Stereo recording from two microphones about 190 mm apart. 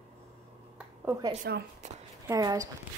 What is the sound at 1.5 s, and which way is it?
Speech, 65° right (ahead or behind).